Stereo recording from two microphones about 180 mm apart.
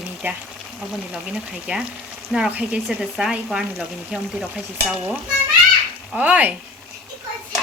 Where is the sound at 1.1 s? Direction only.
5° right (ahead or behind).